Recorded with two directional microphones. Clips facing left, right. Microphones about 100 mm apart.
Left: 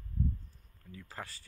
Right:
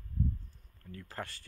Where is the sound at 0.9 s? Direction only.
5° left (ahead or behind).